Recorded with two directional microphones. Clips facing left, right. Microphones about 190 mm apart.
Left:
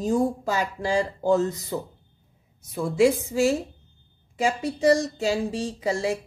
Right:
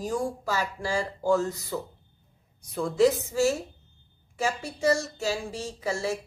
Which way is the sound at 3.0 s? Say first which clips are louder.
Left 2 dB; 15° left (ahead or behind).